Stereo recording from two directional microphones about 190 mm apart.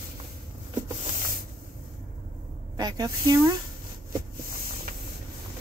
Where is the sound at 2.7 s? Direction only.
20° right (ahead or behind).